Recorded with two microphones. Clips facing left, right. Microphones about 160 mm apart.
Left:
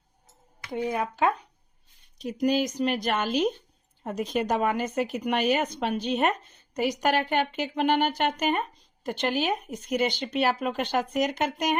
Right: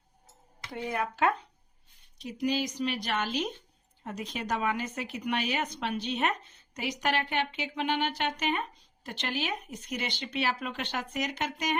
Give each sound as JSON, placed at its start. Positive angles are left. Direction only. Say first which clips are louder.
{"t": 0.7, "sound": "speech", "louder": "left 5 dB", "side_deg": 20}
{"t": 2.1, "sound": "speech", "louder": "left 5 dB", "side_deg": 45}